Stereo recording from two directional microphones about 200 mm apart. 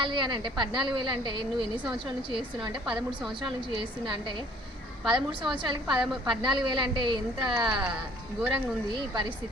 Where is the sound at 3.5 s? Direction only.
25° right (ahead or behind).